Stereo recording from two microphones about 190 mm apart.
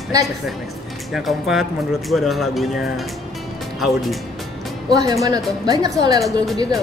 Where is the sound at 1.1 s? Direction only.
Centre (ahead or behind).